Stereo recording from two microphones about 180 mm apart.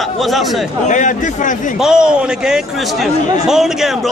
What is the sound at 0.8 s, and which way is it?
Speech, 45° left (ahead or behind).